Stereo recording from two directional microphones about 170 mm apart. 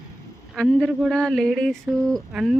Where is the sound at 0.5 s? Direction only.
Centre (ahead or behind).